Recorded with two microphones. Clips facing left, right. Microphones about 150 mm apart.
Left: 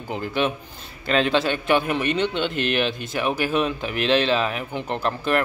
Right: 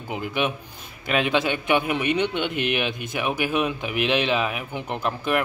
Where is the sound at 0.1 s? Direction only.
15° right (ahead or behind).